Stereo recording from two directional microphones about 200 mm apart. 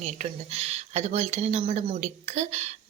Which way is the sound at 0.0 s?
30° right (ahead or behind).